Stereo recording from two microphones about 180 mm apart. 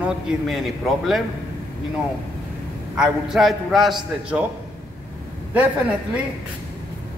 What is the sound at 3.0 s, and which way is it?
Speech, centre (ahead or behind).